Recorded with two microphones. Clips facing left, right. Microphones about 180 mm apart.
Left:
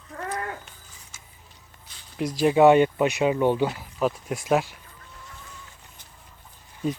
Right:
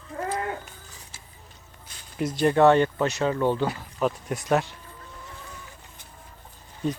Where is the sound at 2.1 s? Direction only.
Centre (ahead or behind).